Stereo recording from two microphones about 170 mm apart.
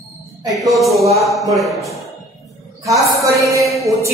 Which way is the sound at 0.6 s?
Centre (ahead or behind).